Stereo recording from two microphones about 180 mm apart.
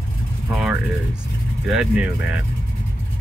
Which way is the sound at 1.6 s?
5° right (ahead or behind).